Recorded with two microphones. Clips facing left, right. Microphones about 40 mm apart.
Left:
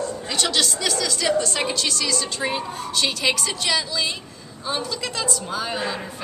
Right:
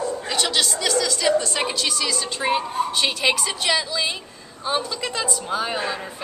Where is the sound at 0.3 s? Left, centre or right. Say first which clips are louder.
Left 1 dB; centre.